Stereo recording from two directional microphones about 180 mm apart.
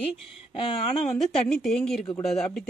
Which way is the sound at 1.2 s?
Centre (ahead or behind).